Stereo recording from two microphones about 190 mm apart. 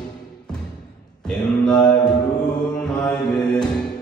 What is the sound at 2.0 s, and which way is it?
Mantra, 20° left (ahead or behind).